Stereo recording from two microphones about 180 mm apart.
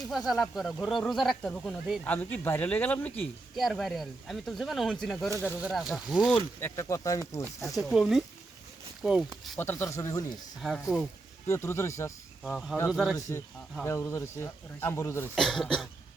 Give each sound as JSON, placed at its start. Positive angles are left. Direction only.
{"t": 0.3, "sound": "speech", "side_deg": 0}
{"t": 6.6, "sound": "speech", "side_deg": 15}
{"t": 7.8, "sound": "speech", "side_deg": 0}
{"t": 9.6, "sound": "speech", "side_deg": 15}
{"t": 10.6, "sound": "speech", "side_deg": 0}
{"t": 11.4, "sound": "speech", "side_deg": 15}
{"t": 12.4, "sound": "speech", "side_deg": 0}
{"t": 13.8, "sound": "speech", "side_deg": 15}
{"t": 15.4, "sound": "speech", "side_deg": 0}